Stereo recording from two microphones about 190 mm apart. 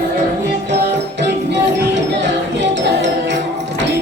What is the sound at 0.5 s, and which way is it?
Music, 65° right (ahead or behind).